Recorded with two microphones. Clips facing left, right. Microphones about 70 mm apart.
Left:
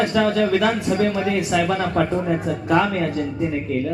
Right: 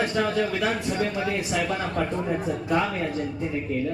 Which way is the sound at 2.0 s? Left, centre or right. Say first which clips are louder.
Left 6 dB; left.